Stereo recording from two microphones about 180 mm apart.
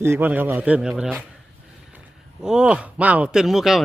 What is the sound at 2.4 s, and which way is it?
Speech, 5° right (ahead or behind).